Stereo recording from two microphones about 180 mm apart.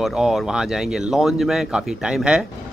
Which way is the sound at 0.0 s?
Centre (ahead or behind).